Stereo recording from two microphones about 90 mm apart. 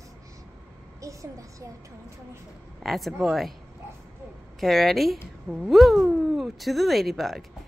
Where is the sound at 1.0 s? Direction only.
35° right (ahead or behind).